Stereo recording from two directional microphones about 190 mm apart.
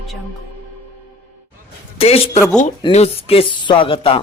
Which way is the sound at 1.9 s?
30° left (ahead or behind).